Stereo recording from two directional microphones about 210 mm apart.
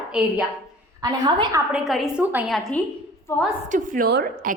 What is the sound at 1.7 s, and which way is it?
A woman's voice, 5° right (ahead or behind).